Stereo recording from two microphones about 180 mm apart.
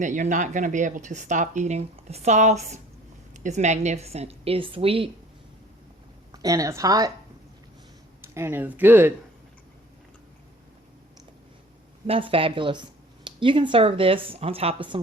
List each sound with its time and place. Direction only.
0.0 s a woman's voice: 45° right (ahead or behind)
6.3 s speech: 20° right (ahead or behind)
8.2 s speech: 15° right (ahead or behind)
12.0 s speech: 30° right (ahead or behind)